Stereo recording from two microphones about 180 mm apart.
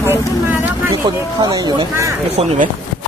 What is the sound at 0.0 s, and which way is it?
Vehicle, 15° right (ahead or behind).